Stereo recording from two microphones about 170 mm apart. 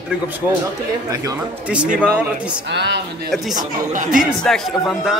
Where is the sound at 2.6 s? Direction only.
90° right.